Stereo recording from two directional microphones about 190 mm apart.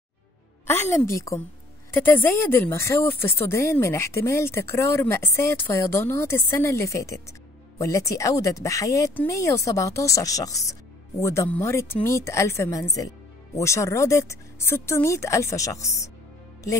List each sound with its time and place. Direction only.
0.7 s speech: 15° left (ahead or behind)